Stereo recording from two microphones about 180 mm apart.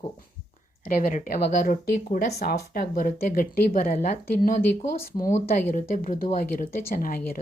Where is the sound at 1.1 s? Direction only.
50° left (ahead or behind).